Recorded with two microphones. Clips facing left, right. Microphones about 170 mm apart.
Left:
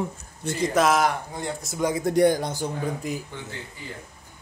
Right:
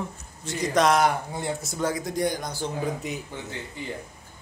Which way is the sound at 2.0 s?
55° left (ahead or behind).